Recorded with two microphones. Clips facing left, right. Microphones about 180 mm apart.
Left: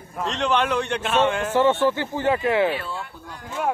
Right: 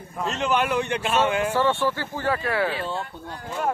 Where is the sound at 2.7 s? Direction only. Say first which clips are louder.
Right 2 dB; 25° right (ahead or behind).